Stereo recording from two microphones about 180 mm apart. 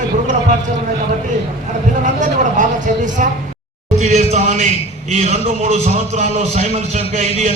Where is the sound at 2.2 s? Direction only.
45° right (ahead or behind).